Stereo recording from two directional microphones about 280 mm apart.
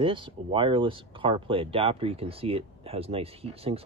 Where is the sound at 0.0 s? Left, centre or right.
Centre.